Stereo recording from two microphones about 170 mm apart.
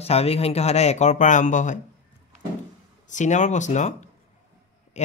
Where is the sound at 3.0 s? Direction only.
45° left (ahead or behind).